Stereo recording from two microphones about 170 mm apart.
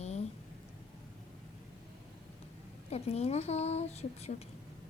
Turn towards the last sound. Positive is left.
turn(degrees=40)  # may be behind; listen again after turning